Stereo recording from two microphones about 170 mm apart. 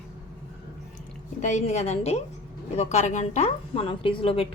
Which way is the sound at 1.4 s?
45° left (ahead or behind).